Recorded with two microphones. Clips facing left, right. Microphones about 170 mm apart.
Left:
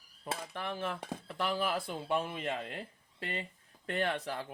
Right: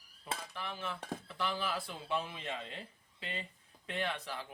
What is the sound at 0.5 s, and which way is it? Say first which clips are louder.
Speech: left 5 dB; 55° left (ahead or behind).